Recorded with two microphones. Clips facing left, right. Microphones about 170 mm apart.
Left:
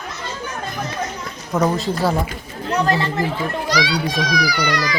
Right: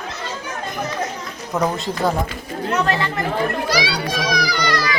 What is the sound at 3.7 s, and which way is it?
Speech, 10° right (ahead or behind).